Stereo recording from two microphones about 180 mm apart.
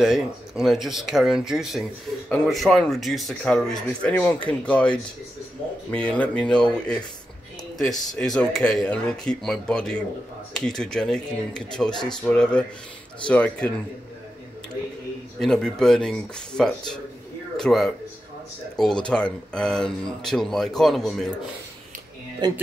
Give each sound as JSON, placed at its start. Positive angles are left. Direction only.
{"t": 0.0, "sound": "speech", "side_deg": 0}
{"t": 8.2, "sound": "speech", "side_deg": 5}
{"t": 15.3, "sound": "speech", "side_deg": 5}
{"t": 22.4, "sound": "speech", "side_deg": -25}